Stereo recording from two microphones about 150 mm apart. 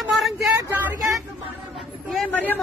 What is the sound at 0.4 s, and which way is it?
Vehicle, 15° right (ahead or behind).